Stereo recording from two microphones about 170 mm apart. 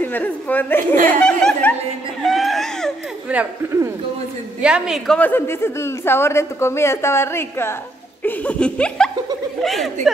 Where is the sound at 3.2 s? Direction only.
10° right (ahead or behind).